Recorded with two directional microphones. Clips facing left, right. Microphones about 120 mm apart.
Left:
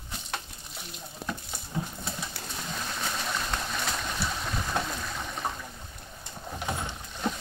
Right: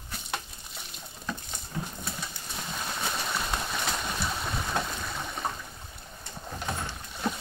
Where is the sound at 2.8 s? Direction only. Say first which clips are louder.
Right 1 dB; 5° right (ahead or behind).